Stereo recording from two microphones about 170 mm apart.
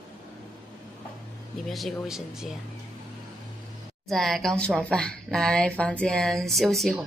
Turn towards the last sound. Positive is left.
turn(degrees=0)  # may be behind; listen again after turning